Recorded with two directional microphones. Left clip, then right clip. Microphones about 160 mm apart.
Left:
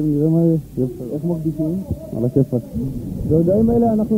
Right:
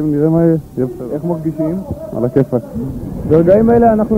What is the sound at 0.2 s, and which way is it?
A man's voice, 25° right (ahead or behind).